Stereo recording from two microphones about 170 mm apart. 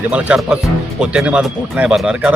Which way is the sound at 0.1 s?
5° right (ahead or behind).